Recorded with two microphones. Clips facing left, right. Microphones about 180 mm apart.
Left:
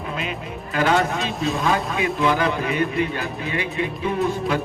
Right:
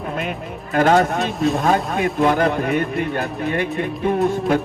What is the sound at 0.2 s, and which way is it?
Speech, 50° right (ahead or behind).